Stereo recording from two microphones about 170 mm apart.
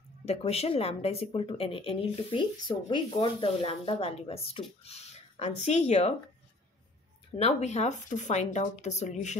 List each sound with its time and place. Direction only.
0.2 s speech: 35° left (ahead or behind)
7.3 s speech: 40° left (ahead or behind)